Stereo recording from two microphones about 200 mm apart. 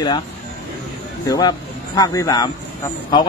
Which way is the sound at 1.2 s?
20° left (ahead or behind).